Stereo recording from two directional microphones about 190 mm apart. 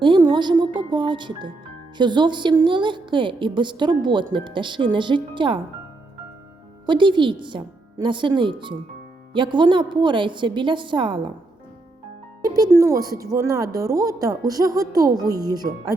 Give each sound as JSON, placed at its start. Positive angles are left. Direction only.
{"t": 0.0, "sound": "a woman's voice", "side_deg": -25}
{"t": 6.8, "sound": "a woman's voice", "side_deg": -25}
{"t": 12.7, "sound": "a woman's voice", "side_deg": -15}